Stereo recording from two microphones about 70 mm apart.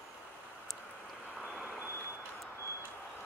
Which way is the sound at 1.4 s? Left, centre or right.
Centre.